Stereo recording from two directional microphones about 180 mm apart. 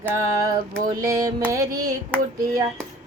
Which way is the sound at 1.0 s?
20° right (ahead or behind).